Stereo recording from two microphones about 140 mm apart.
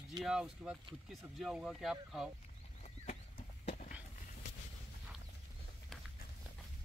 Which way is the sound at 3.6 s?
45° left (ahead or behind).